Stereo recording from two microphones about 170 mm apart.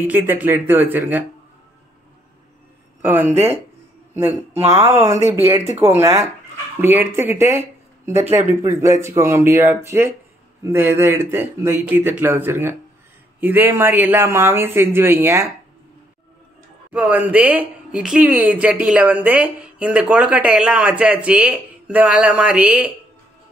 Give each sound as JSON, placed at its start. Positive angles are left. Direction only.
{"t": 0.0, "sound": "speech", "side_deg": -10}
{"t": 3.0, "sound": "speech", "side_deg": -10}
{"t": 4.6, "sound": "speech", "side_deg": -15}
{"t": 16.9, "sound": "speech", "side_deg": -10}